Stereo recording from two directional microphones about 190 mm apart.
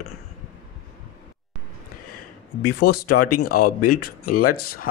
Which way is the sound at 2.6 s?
55° left (ahead or behind).